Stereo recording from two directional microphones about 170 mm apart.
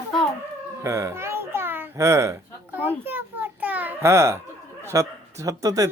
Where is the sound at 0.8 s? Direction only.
15° right (ahead or behind).